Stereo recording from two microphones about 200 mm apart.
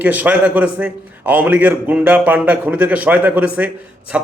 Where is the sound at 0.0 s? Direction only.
5° right (ahead or behind).